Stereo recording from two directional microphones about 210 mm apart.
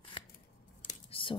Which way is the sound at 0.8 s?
25° left (ahead or behind).